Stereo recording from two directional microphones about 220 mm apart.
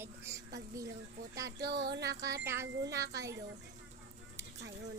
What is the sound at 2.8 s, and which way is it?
Speech, 15° right (ahead or behind).